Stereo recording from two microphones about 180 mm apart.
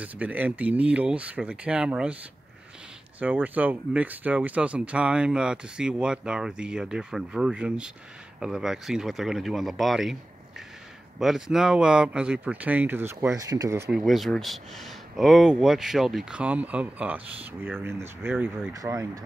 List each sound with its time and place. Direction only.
0.0 s speech: 10° right (ahead or behind)
3.2 s speech: 10° right (ahead or behind)
11.1 s speech: 5° right (ahead or behind)
13.9 s speech: centre (ahead or behind)
18.7 s speech: 20° right (ahead or behind)